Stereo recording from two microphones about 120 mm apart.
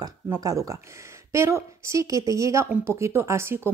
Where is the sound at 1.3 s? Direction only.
25° right (ahead or behind).